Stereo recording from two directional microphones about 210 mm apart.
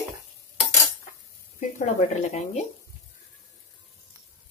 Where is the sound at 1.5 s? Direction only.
35° left (ahead or behind).